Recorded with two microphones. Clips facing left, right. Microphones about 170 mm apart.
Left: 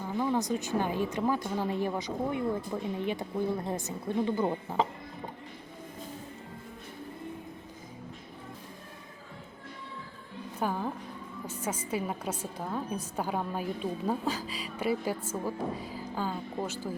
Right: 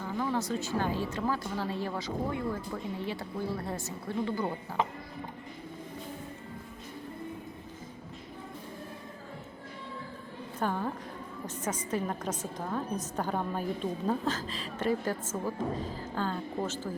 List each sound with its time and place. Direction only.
0.2 s speech: 15° left (ahead or behind)
10.6 s a woman's voice: 10° left (ahead or behind)